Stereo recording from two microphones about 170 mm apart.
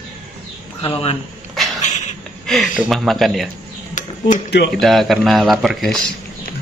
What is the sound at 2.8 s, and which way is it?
Speech, centre (ahead or behind).